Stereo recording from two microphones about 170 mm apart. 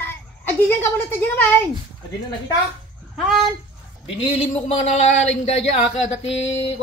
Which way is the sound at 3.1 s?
Centre (ahead or behind).